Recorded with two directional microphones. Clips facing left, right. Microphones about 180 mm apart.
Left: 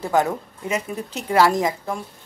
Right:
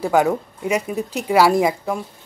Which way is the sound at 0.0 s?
10° right (ahead or behind).